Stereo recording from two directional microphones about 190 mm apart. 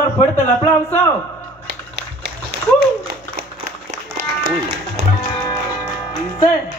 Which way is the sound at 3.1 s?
50° right (ahead or behind).